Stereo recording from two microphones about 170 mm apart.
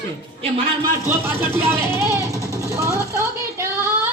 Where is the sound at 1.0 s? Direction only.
15° right (ahead or behind).